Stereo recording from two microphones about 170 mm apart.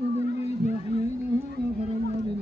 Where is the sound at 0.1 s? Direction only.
40° left (ahead or behind).